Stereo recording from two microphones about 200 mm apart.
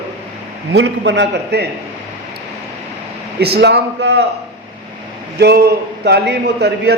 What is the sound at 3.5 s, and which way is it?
Speech, 55° right (ahead or behind).